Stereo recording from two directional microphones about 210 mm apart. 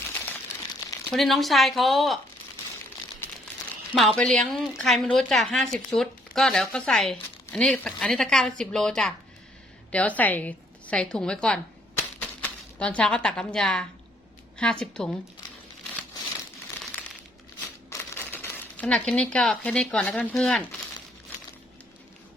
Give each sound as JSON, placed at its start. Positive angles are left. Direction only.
{"t": 1.1, "sound": "a woman's voice", "side_deg": 0}
{"t": 3.9, "sound": "a woman's voice", "side_deg": 0}
{"t": 17.9, "sound": "speech", "side_deg": 10}